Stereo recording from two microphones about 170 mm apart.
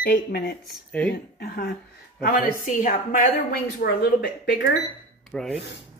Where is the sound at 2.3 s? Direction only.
50° left (ahead or behind).